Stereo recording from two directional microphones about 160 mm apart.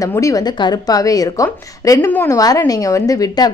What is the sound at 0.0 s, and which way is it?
A woman's voice, 20° left (ahead or behind).